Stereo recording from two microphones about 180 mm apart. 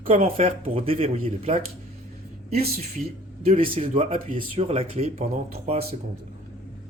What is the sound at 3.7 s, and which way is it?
Speech, 35° right (ahead or behind).